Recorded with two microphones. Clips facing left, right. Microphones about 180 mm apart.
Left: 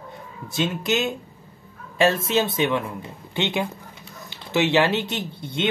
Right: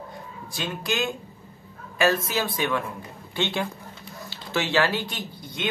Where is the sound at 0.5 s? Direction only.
20° left (ahead or behind).